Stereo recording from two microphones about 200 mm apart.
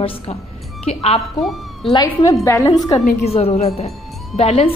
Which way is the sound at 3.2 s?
30° left (ahead or behind).